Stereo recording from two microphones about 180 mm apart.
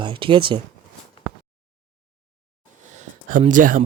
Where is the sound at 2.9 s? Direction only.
40° right (ahead or behind).